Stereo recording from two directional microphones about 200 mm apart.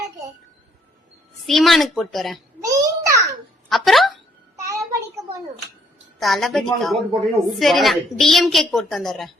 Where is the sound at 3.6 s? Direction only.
Centre (ahead or behind).